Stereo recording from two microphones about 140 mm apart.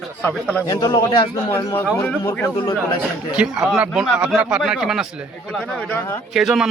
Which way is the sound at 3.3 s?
5° right (ahead or behind).